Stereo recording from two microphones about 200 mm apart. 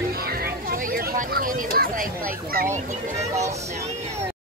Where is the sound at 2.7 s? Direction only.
35° right (ahead or behind).